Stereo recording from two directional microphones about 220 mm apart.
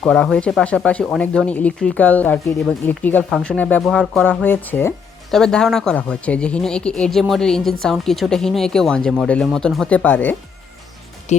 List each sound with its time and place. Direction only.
0.0 s speech: 5° left (ahead or behind)
11.3 s speech: 30° left (ahead or behind)